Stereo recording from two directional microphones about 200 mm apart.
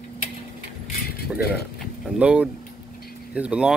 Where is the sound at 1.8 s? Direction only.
5° right (ahead or behind).